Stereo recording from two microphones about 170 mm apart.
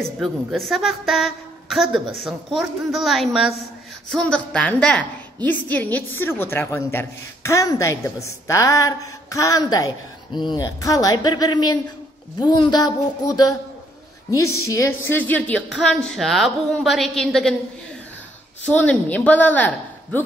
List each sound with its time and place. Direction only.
0.2 s a woman's voice: centre (ahead or behind)
18.7 s a woman's voice: 10° left (ahead or behind)